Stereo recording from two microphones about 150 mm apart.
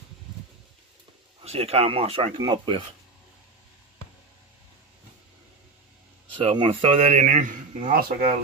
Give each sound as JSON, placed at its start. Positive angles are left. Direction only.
{"t": 1.4, "sound": "speech", "side_deg": -45}
{"t": 6.4, "sound": "speech", "side_deg": -35}
{"t": 6.8, "sound": "speech", "side_deg": -45}